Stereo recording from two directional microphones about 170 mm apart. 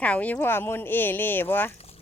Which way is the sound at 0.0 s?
10° left (ahead or behind).